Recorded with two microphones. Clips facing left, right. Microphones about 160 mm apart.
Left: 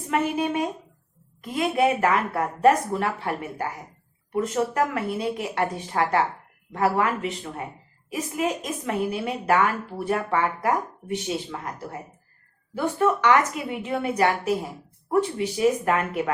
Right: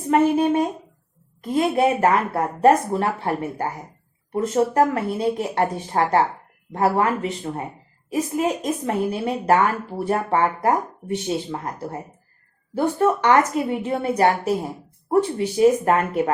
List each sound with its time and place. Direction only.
0.1 s a woman's voice: 35° right (ahead or behind)